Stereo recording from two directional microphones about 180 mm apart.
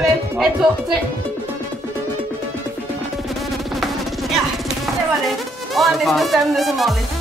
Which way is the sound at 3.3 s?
Centre (ahead or behind).